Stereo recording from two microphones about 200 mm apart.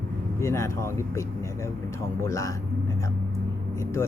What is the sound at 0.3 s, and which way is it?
Speech, 15° left (ahead or behind).